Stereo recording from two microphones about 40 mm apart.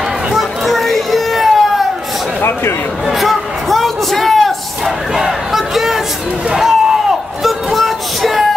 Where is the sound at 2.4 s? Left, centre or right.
Left.